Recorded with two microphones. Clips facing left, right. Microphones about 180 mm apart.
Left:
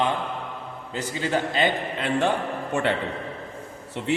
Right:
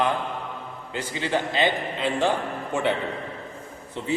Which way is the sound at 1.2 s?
50° left (ahead or behind).